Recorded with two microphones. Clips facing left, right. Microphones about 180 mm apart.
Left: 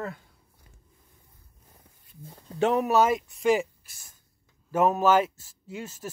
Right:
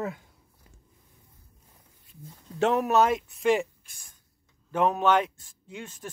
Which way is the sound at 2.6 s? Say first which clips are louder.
Even; centre (ahead or behind).